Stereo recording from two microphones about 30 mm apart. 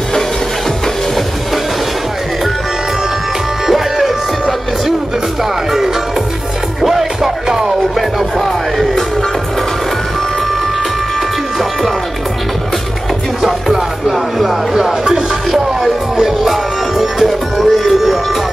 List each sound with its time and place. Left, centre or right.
3.6 s music: centre
6.8 s music: centre
7.4 s music: centre
8.4 s music: centre
13.4 s music: centre
14.8 s music: centre